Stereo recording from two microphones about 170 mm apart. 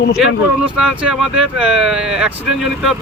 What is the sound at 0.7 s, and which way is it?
Speech, 5° right (ahead or behind).